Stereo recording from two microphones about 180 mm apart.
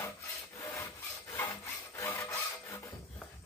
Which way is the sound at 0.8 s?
15° left (ahead or behind).